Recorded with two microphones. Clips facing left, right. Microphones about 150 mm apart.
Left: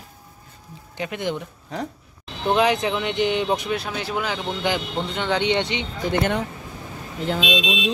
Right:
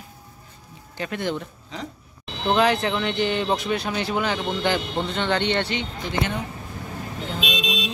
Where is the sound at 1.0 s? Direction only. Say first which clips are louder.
Even; 15° left (ahead or behind).